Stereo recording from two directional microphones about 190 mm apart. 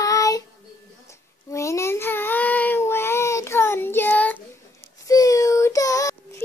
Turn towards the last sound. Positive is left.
turn(degrees=15)  # may be behind; listen again after turning